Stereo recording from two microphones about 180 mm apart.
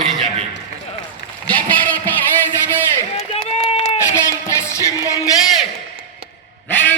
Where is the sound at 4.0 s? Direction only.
15° left (ahead or behind).